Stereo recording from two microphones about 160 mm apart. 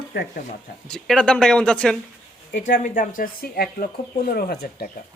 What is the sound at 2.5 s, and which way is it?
Speech, 50° left (ahead or behind).